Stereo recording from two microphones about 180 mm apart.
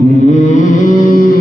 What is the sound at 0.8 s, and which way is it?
Music, 50° left (ahead or behind).